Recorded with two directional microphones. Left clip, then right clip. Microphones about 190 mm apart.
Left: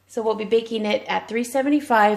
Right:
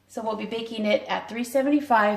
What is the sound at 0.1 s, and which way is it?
A woman's voice, 55° left (ahead or behind).